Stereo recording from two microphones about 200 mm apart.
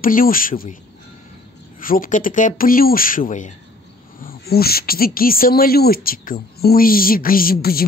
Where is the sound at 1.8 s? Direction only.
45° left (ahead or behind).